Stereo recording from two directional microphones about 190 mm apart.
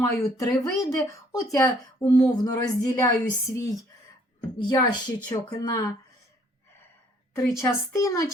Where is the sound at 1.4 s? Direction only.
15° left (ahead or behind).